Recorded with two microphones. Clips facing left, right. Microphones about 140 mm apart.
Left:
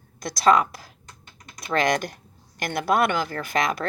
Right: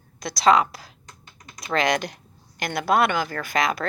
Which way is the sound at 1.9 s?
50° left (ahead or behind).